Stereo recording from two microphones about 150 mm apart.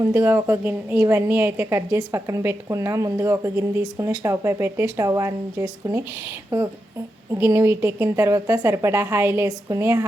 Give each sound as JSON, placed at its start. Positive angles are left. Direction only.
{"t": 0.0, "sound": "a woman's voice", "side_deg": -20}